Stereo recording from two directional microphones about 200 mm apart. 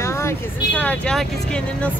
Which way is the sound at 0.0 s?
15° left (ahead or behind).